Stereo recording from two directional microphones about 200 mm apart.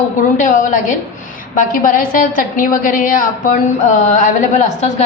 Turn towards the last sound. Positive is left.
turn(degrees=35)  # may be behind; listen again after turning